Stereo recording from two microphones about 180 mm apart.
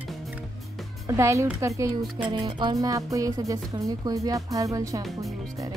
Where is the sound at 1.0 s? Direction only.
15° right (ahead or behind).